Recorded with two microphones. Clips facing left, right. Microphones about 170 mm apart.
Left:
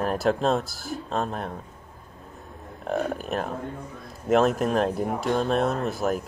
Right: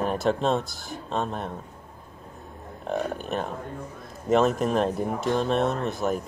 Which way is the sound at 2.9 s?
Centre (ahead or behind).